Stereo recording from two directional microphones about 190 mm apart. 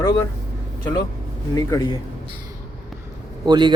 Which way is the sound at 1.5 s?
20° left (ahead or behind).